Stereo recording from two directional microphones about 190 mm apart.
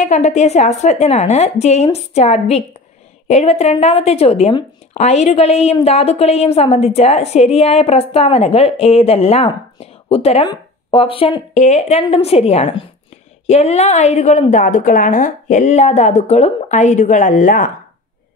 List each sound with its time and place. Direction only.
0.0 s speech: 40° left (ahead or behind)